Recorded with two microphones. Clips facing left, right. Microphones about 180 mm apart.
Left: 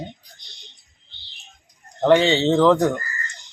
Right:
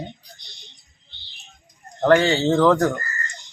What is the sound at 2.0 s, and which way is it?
Speech, centre (ahead or behind).